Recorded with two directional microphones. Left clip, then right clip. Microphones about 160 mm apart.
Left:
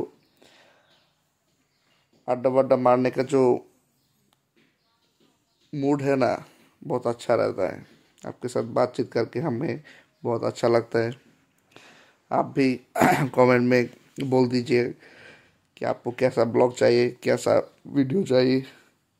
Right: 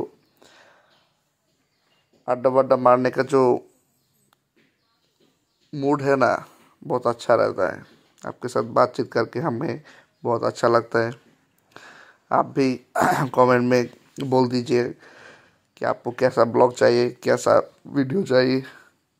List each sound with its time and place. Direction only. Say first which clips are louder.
0.4 s a sound: right 6 dB; 5° left (ahead or behind)
2.2 s a man's voice: right 2 dB; 5° left (ahead or behind)
5.7 s speech: right 3 dB; 10° left (ahead or behind)